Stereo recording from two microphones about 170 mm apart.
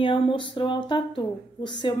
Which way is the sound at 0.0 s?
30° left (ahead or behind).